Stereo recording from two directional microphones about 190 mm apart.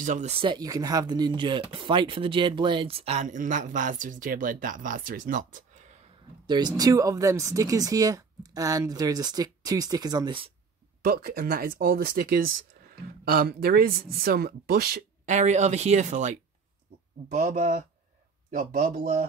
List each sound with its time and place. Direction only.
0.0 s speech: 40° right (ahead or behind)
6.4 s speech: 25° right (ahead or behind)
11.1 s speech: 50° right (ahead or behind)
15.3 s speech: 40° right (ahead or behind)